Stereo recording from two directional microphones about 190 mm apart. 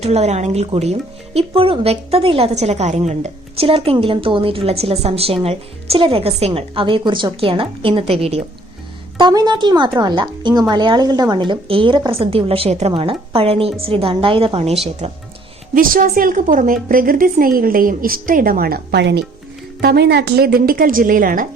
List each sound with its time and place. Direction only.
0.0 s speech: 35° right (ahead or behind)
15.7 s a woman's voice: 45° right (ahead or behind)